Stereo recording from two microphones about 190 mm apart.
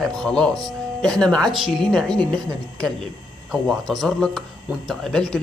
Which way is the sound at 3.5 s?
Centre (ahead or behind).